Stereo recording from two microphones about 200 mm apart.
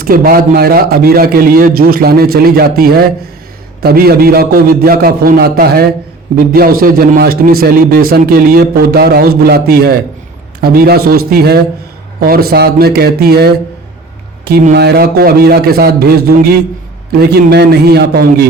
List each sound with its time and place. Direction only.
0.0 s a man's voice: 45° right (ahead or behind)